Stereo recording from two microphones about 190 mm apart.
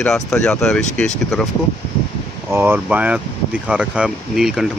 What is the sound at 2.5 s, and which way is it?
Speech, 10° right (ahead or behind).